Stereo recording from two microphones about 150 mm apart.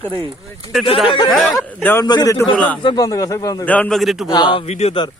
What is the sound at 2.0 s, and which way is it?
Speech, 25° left (ahead or behind).